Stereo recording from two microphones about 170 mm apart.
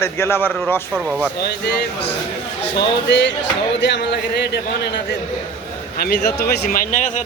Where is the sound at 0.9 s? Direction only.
5° right (ahead or behind).